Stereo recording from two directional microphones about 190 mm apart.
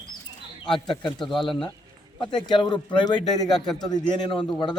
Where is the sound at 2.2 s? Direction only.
25° left (ahead or behind).